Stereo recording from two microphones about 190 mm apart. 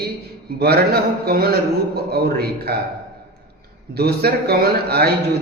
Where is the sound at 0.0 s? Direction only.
55° right (ahead or behind).